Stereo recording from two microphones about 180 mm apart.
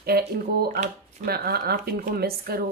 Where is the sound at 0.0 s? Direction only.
60° right (ahead or behind).